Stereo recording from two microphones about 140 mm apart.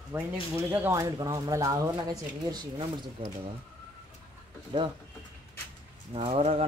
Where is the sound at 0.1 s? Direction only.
20° right (ahead or behind).